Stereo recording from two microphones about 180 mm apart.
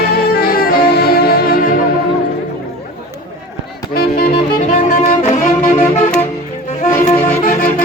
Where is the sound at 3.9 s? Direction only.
60° left (ahead or behind).